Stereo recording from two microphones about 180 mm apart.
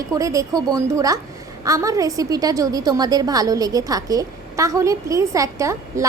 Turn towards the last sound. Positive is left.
turn(degrees=-15)  # may be behind; listen again after turning